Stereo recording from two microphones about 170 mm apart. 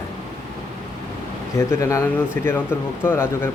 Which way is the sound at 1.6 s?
15° left (ahead or behind).